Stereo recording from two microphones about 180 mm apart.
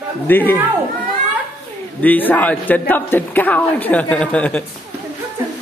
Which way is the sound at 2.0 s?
10° left (ahead or behind).